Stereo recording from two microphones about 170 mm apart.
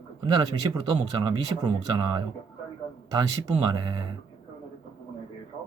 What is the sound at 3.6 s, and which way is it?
Speech, 25° right (ahead or behind).